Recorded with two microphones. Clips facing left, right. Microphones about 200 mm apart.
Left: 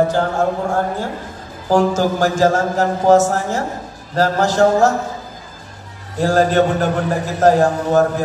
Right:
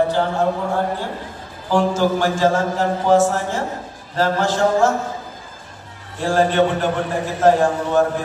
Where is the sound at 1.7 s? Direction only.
40° left (ahead or behind).